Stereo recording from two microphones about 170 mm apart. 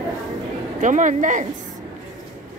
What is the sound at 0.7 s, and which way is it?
Speech, 50° right (ahead or behind).